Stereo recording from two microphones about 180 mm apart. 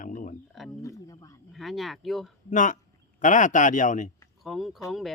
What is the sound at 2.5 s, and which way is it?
Speech, 45° left (ahead or behind).